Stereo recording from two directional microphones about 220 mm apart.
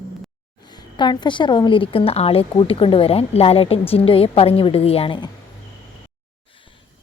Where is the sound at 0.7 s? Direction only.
20° left (ahead or behind).